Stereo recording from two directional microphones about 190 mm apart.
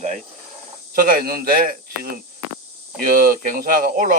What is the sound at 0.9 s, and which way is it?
Speech, 50° right (ahead or behind).